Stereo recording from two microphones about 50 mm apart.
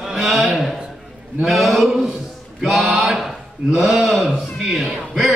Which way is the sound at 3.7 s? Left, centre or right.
Centre.